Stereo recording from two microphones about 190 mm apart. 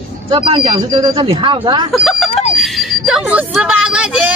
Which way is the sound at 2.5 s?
Centre (ahead or behind).